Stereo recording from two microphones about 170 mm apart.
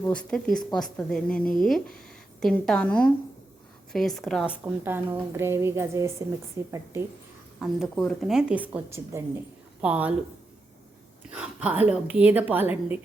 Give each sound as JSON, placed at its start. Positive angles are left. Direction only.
{"t": 0.0, "sound": "a woman's voice", "side_deg": 5}
{"t": 7.6, "sound": "a woman's voice", "side_deg": 0}
{"t": 11.3, "sound": "a woman's voice", "side_deg": -10}